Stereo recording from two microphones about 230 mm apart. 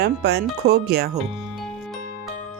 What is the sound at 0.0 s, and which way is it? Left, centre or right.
Speech, right.